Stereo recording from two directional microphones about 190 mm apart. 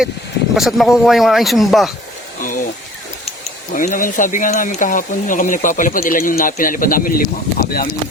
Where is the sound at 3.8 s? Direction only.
45° left (ahead or behind).